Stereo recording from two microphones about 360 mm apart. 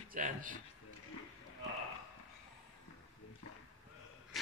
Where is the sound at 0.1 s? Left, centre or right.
Right.